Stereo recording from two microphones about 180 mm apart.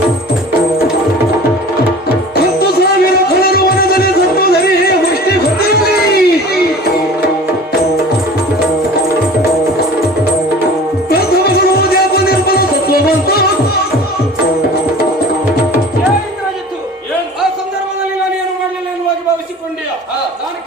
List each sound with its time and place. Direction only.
2.3 s music: 60° left (ahead or behind)
5.5 s a sound: 60° left (ahead or behind)
11.1 s music: 60° left (ahead or behind)